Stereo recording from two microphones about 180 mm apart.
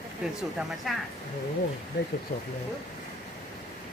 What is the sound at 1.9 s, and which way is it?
Speech, 65° left (ahead or behind).